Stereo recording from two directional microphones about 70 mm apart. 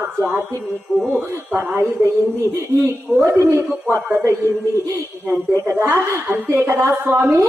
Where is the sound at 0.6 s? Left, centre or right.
Centre.